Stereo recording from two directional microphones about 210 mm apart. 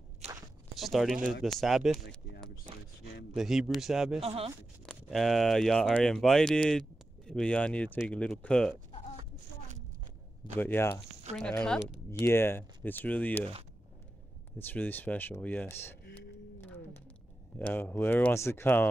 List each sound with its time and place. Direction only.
0.2 s walk: 30° right (ahead or behind)
0.7 s speech: centre (ahead or behind)
2.0 s speech: 55° left (ahead or behind)
3.3 s speech: centre (ahead or behind)
4.2 s speech: 30° right (ahead or behind)
4.8 s speech: centre (ahead or behind)
10.6 s speech: 10° left (ahead or behind)
14.6 s speech: 10° left (ahead or behind)
17.6 s speech: 10° left (ahead or behind)